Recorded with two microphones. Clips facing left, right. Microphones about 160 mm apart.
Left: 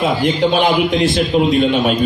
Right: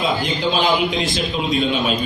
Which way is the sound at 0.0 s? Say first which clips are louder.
Left 5 dB; 60° left (ahead or behind).